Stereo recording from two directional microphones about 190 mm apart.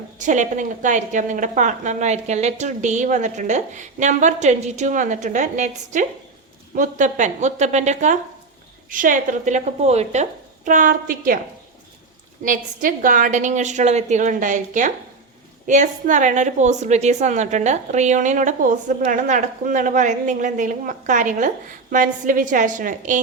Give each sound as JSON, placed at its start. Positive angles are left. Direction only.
{"t": 0.2, "sound": "a woman's voice", "side_deg": -40}
{"t": 12.5, "sound": "a woman's voice", "side_deg": -45}